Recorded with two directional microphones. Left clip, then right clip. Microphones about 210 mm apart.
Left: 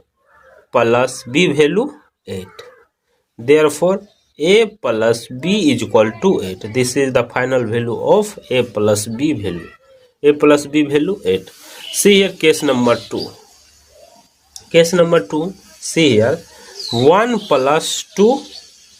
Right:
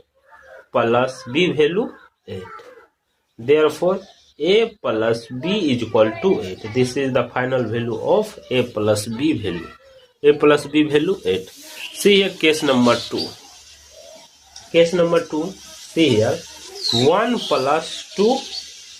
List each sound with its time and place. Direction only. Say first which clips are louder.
0.7 s speech: left 4 dB; 35° left (ahead or behind)
3.4 s speech: left 4 dB; 40° left (ahead or behind)
14.7 s speech: left 4 dB; 45° left (ahead or behind)
17.1 s speech: left 7 dB; 40° left (ahead or behind)